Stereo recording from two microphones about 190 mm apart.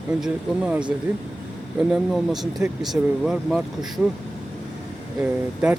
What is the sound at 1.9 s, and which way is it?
Speech, centre (ahead or behind).